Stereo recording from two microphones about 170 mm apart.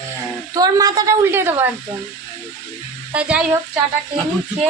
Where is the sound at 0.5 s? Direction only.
20° right (ahead or behind).